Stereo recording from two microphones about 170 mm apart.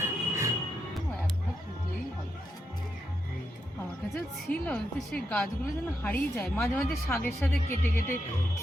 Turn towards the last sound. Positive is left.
turn(degrees=10)  # may be behind; listen again after turning